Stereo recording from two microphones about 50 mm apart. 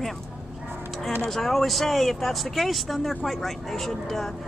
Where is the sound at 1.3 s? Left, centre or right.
Centre.